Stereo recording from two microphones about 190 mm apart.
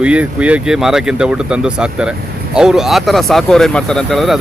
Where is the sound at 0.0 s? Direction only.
5° right (ahead or behind).